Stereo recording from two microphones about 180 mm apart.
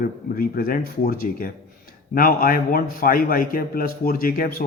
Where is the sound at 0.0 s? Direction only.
55° left (ahead or behind).